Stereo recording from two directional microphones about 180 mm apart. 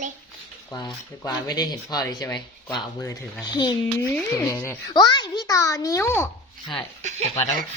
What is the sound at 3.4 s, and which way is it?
A child's voice, 25° left (ahead or behind).